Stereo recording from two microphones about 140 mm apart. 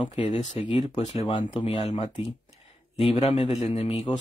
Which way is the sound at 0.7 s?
50° left (ahead or behind).